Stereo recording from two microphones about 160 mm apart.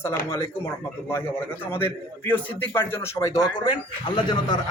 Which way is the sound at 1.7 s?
15° left (ahead or behind).